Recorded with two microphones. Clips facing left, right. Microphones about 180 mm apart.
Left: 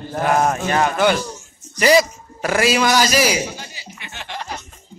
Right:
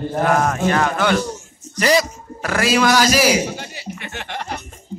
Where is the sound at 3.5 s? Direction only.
55° right (ahead or behind).